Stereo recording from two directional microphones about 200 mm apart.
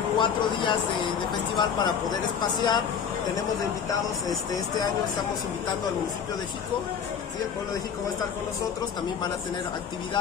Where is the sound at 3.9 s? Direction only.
20° left (ahead or behind).